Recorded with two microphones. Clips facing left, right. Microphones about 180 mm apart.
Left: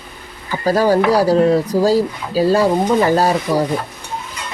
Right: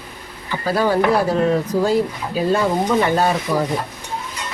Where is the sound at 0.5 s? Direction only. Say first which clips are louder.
Left 4 dB; 40° left (ahead or behind).